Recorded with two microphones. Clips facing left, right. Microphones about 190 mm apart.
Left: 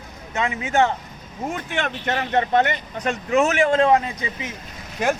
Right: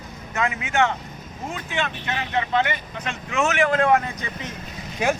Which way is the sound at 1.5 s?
50° left (ahead or behind).